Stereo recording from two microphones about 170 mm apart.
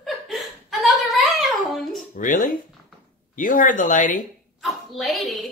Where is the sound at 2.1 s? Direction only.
50° left (ahead or behind).